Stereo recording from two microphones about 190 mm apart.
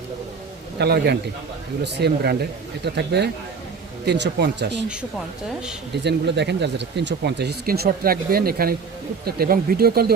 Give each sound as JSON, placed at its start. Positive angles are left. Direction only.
{"t": 0.8, "sound": "speech", "side_deg": -60}
{"t": 5.9, "sound": "speech", "side_deg": -65}